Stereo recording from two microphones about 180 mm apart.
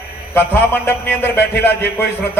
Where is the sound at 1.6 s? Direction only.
65° left (ahead or behind).